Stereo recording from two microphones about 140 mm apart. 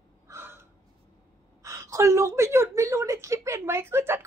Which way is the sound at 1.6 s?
20° right (ahead or behind).